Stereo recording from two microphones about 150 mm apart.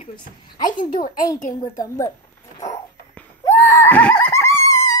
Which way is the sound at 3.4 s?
10° left (ahead or behind).